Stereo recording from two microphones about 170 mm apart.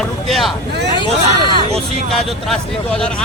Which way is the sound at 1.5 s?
35° right (ahead or behind).